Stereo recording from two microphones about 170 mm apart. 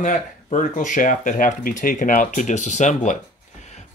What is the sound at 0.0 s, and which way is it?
Speech, 50° left (ahead or behind).